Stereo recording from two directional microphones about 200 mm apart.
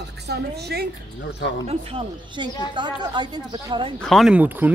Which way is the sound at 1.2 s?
55° left (ahead or behind).